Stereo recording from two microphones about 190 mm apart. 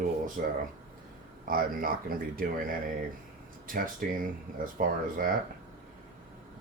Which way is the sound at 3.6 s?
45° right (ahead or behind).